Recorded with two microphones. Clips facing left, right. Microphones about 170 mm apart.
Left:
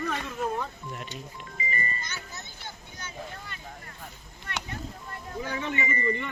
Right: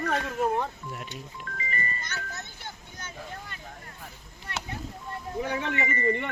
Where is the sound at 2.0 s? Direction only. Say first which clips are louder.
Right 2 dB; 60° right (ahead or behind).